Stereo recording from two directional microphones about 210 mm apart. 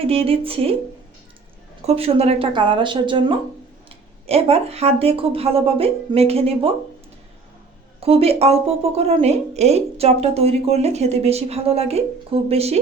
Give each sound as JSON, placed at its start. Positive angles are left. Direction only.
{"t": 0.1, "sound": "speech", "side_deg": -25}
{"t": 1.9, "sound": "speech", "side_deg": -30}
{"t": 8.0, "sound": "speech", "side_deg": -30}